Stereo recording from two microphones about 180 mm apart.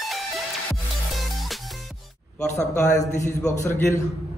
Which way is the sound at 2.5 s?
40° left (ahead or behind).